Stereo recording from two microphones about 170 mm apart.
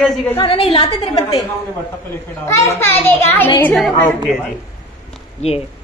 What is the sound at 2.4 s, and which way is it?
A woman's voice, 15° left (ahead or behind).